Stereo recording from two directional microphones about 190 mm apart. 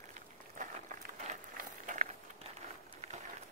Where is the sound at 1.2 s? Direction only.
40° right (ahead or behind).